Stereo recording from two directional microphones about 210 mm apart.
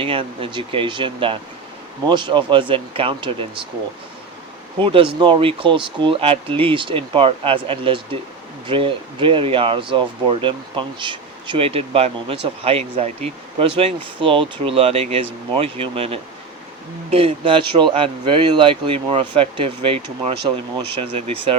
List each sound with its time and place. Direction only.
0.0 s speech: 25° right (ahead or behind)
4.8 s speech: 25° right (ahead or behind)